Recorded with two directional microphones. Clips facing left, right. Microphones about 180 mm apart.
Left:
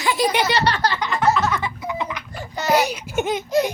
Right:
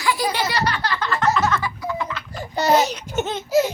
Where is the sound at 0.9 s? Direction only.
15° left (ahead or behind).